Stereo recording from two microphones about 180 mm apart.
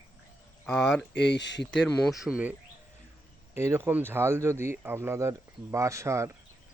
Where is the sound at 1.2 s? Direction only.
75° left (ahead or behind).